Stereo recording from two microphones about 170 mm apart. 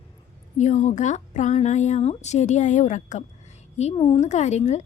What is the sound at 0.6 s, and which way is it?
Speech, 45° left (ahead or behind).